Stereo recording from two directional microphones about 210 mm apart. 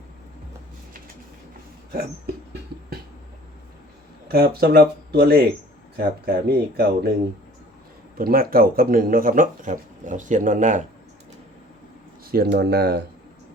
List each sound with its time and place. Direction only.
1.9 s a sound: 45° right (ahead or behind)
4.3 s speech: 50° right (ahead or behind)
8.2 s speech: 45° right (ahead or behind)
12.2 s speech: 45° right (ahead or behind)